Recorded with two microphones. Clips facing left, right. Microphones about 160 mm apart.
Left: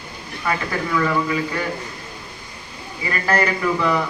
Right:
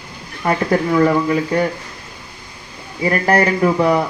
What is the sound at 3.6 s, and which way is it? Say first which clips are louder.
Speech: right 6 dB; 40° right (ahead or behind).